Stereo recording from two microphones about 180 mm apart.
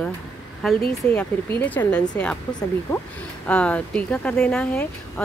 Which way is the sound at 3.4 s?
5° left (ahead or behind).